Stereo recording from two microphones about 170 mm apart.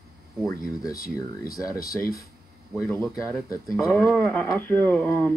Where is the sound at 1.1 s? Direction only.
20° left (ahead or behind).